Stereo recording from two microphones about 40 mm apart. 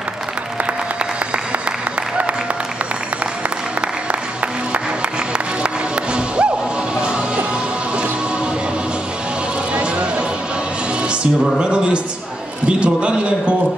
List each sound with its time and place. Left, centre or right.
5.3 s music: right
9.8 s music: right
12.6 s a man's voice: right